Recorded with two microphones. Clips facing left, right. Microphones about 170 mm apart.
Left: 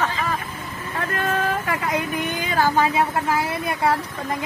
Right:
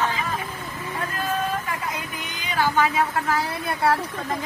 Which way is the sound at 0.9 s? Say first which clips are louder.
Left 3 dB; 75° left (ahead or behind).